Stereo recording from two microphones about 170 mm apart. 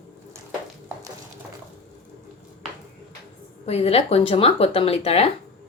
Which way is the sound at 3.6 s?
40° left (ahead or behind).